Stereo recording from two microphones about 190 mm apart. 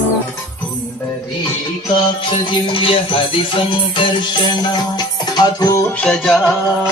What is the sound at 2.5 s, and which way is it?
Music, 25° left (ahead or behind).